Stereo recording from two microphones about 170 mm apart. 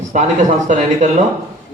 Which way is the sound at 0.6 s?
45° right (ahead or behind).